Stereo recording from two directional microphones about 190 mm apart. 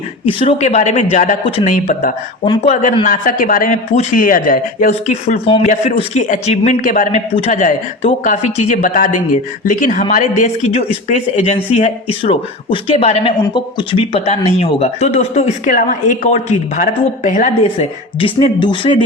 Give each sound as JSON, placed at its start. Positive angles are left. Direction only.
{"t": 0.3, "sound": "speech", "side_deg": 30}
{"t": 2.4, "sound": "speech", "side_deg": 30}
{"t": 2.8, "sound": "a man's voice", "side_deg": 45}